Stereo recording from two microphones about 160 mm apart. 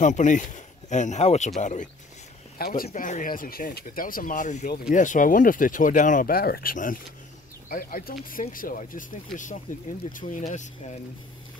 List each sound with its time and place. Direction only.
0.0 s speech: 50° left (ahead or behind)
2.6 s speech: 65° left (ahead or behind)
2.9 s speech: 50° left (ahead or behind)